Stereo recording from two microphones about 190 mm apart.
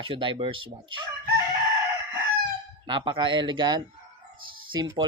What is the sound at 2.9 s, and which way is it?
Speech, 25° right (ahead or behind).